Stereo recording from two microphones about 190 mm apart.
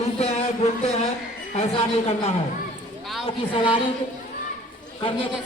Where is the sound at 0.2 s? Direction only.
35° left (ahead or behind).